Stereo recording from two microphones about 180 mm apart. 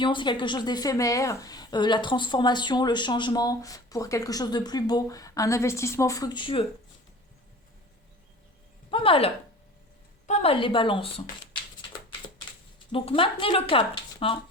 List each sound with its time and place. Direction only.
0.0 s a woman's voice: 25° left (ahead or behind)
8.9 s a woman's voice: 30° left (ahead or behind)
12.9 s a woman's voice: 30° left (ahead or behind)